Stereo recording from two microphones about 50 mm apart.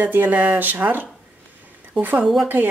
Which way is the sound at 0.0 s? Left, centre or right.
Right.